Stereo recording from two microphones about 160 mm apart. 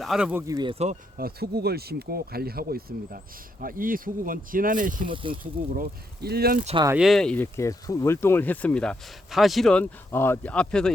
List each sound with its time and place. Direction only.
0.0 s speech: 5° right (ahead or behind)
0.4 s speech: 25° right (ahead or behind)
0.8 s speech: 45° right (ahead or behind)
1.2 s speech: 80° right; by 5.0 s 55° right (ahead or behind)
5.0 s speech: 30° right (ahead or behind)
5.4 s speech: 60° right (ahead or behind)
6.9 s speech: centre (ahead or behind)
7.4 s speech: 20° left (ahead or behind)